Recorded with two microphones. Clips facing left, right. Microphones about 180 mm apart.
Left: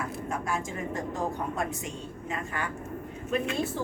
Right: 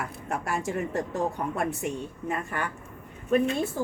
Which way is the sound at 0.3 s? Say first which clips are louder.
Right 4 dB; 70° right (ahead or behind).